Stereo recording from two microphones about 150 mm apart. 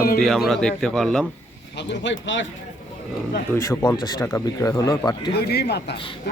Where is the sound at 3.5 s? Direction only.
20° left (ahead or behind).